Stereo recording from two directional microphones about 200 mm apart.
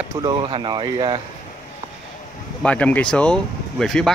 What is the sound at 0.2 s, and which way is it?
Speech, 20° right (ahead or behind).